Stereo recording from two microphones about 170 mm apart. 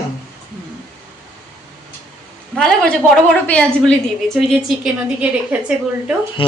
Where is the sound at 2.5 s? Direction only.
5° left (ahead or behind).